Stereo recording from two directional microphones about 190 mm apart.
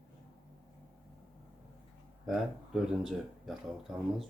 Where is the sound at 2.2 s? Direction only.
Centre (ahead or behind).